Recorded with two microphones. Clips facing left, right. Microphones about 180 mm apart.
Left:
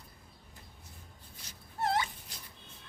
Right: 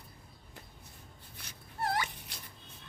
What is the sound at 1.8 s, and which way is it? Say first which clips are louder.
Dog: left 2 dB; 25° left (ahead or behind).